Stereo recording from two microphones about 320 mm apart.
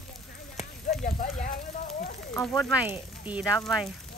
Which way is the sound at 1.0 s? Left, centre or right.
Left.